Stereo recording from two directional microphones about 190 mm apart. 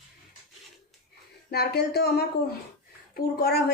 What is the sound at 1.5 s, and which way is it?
A woman's voice, 55° left (ahead or behind).